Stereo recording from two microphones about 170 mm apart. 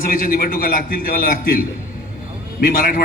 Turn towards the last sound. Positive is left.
turn(degrees=60)  # may be behind; listen again after turning